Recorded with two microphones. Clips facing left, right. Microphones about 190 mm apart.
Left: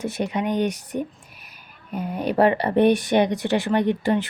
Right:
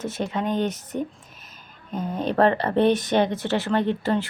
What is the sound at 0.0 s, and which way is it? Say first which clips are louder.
A woman's voice: left 2 dB; 15° left (ahead or behind).